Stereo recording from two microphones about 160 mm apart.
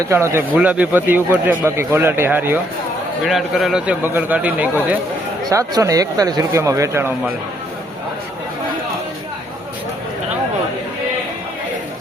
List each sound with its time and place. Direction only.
0.0 s a man's voice: 20° right (ahead or behind)
3.2 s a man's voice: centre (ahead or behind)
5.5 s speech: 20° right (ahead or behind)